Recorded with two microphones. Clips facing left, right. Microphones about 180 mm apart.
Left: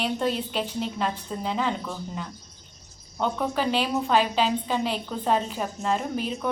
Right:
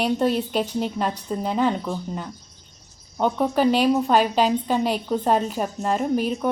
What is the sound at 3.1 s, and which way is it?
A woman's voice, 45° right (ahead or behind).